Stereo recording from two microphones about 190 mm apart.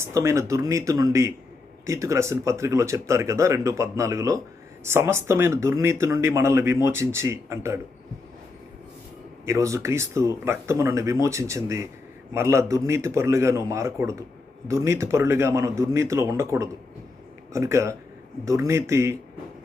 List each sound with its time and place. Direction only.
0.0 s speech: 15° right (ahead or behind)
9.5 s speech: 15° right (ahead or behind)